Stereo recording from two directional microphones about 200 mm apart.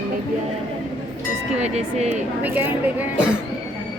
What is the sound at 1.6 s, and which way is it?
Speech, 35° right (ahead or behind).